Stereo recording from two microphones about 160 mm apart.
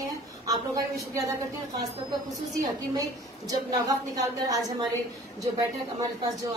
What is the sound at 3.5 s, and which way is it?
A woman's voice, 20° right (ahead or behind).